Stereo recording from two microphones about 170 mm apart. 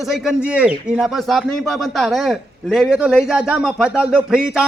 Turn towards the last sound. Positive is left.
turn(degrees=-5)  # may be behind; listen again after turning